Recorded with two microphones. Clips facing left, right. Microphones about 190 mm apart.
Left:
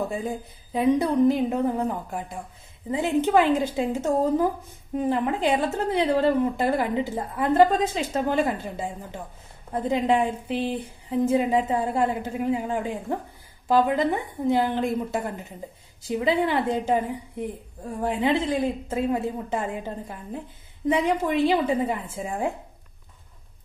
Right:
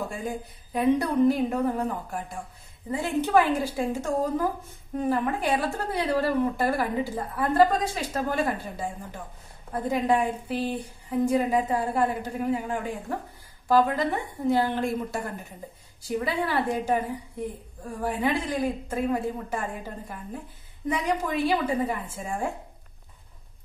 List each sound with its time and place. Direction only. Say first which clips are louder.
0.7 s a woman's voice: left 2 dB; 20° left (ahead or behind)
16.0 s a woman's voice: left 5 dB; 20° left (ahead or behind)